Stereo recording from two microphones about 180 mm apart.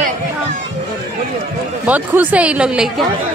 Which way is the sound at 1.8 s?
10° right (ahead or behind).